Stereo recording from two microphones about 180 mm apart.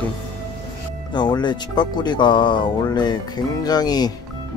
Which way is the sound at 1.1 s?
25° left (ahead or behind).